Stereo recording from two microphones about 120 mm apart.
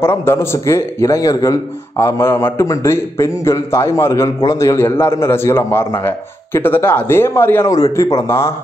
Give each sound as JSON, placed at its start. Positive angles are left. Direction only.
{"t": 0.0, "sound": "a man's voice", "side_deg": 20}